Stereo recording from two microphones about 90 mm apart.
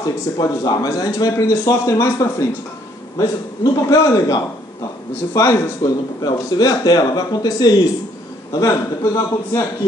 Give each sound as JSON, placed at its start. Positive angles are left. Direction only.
{"t": 0.0, "sound": "speech", "side_deg": 40}
{"t": 5.3, "sound": "speech", "side_deg": 30}
{"t": 6.2, "sound": "speech", "side_deg": 45}